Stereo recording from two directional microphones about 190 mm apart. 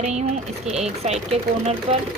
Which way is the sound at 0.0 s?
35° right (ahead or behind).